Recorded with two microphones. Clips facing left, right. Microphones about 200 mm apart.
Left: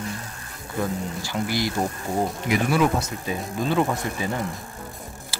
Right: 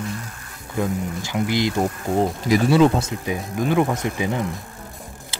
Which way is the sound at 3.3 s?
15° right (ahead or behind).